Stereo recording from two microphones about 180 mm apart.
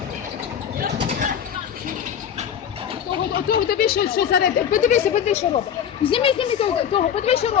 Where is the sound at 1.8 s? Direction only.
45° right (ahead or behind).